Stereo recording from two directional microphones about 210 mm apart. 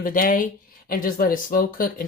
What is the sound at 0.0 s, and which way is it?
Speech, 40° left (ahead or behind).